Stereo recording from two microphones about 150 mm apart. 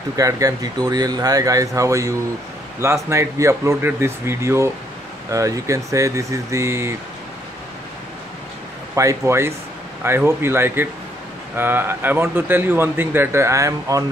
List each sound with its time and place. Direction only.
0.1 s speech: 20° right (ahead or behind)
8.9 s a man's voice: 20° right (ahead or behind)